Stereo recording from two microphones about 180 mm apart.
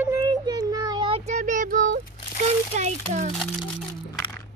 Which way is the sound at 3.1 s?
40° right (ahead or behind).